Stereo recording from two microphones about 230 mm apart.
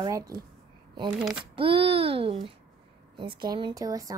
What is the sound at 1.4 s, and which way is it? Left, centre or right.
A child's voice, right.